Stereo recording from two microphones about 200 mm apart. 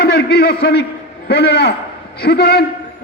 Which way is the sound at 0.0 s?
55° left (ahead or behind).